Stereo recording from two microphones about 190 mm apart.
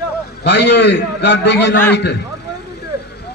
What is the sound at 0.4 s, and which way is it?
A man's voice, 65° left (ahead or behind).